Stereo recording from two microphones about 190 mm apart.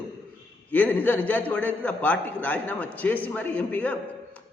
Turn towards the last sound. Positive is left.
turn(degrees=10)  # may be behind; listen again after turning